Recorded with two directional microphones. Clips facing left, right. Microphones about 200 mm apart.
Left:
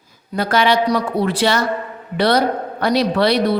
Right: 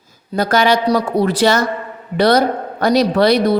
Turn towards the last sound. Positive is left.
turn(degrees=-45)  # may be behind; listen again after turning